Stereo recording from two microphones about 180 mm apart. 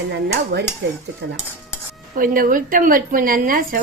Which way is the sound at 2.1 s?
50° right (ahead or behind).